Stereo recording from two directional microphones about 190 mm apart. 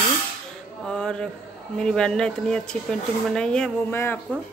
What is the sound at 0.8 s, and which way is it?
Speech, 5° left (ahead or behind).